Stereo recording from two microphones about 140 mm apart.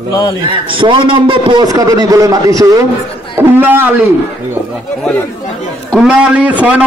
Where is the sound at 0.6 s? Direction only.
35° right (ahead or behind); by 4.0 s 15° right (ahead or behind).